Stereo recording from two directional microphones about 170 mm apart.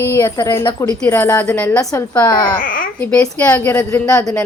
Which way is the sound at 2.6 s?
55° left (ahead or behind).